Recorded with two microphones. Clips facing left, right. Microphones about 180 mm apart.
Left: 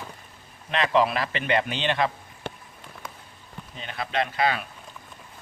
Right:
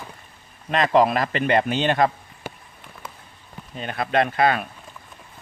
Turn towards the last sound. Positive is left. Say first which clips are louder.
# right 5 dB
turn(degrees=-50)  # may be behind; listen again after turning